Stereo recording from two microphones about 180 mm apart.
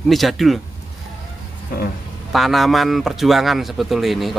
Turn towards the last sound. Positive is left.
turn(degrees=0)  # may be behind; listen again after turning